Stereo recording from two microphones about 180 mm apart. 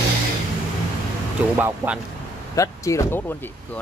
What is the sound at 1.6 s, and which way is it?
Speech, 10° right (ahead or behind).